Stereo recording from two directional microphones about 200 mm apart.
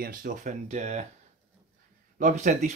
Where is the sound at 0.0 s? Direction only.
45° right (ahead or behind).